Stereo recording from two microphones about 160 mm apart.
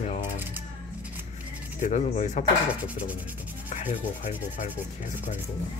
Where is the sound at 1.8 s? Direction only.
45° left (ahead or behind).